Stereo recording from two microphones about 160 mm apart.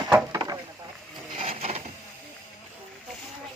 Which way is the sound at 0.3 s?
25° right (ahead or behind).